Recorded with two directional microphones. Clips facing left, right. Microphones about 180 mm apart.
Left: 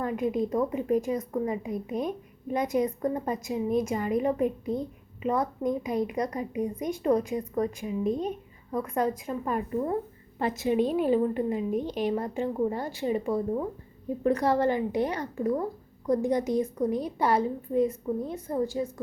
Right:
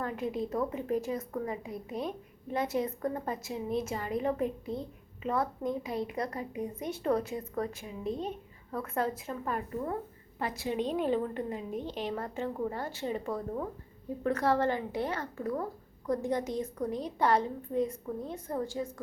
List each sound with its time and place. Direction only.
0.0 s a woman's voice: 15° left (ahead or behind)